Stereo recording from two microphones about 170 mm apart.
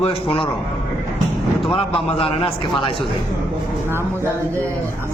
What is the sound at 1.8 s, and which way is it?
A man's voice, 30° left (ahead or behind).